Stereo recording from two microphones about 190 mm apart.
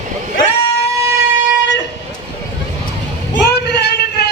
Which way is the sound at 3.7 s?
60° left (ahead or behind).